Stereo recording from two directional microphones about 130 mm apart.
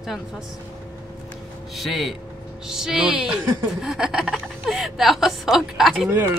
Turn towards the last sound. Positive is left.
turn(degrees=-15)  # may be behind; listen again after turning